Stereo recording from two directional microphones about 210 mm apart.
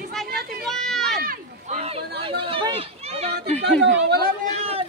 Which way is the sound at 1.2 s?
45° right (ahead or behind).